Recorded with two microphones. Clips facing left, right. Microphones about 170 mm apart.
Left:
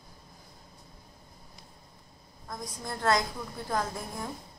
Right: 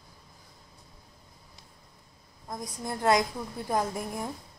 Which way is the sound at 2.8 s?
20° right (ahead or behind).